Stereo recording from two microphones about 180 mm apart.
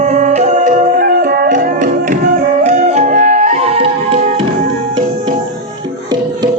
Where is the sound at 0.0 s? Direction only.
40° right (ahead or behind).